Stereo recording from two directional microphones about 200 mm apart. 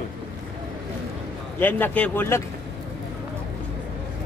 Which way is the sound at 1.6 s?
10° left (ahead or behind).